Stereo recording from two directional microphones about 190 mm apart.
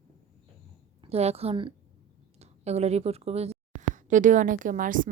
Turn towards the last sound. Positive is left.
turn(degrees=-45)  # may be behind; listen again after turning